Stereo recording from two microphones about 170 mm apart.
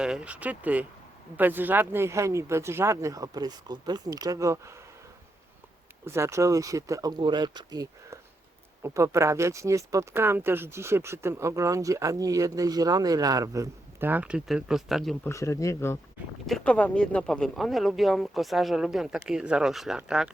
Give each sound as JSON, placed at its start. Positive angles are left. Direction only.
{"t": 0.0, "sound": "speech", "side_deg": -5}
{"t": 6.1, "sound": "speech", "side_deg": -15}
{"t": 15.2, "sound": "speech", "side_deg": 15}
{"t": 16.5, "sound": "speech", "side_deg": 5}